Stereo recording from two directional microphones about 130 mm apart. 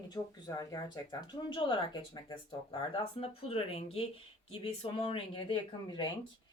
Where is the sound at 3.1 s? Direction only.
50° left (ahead or behind).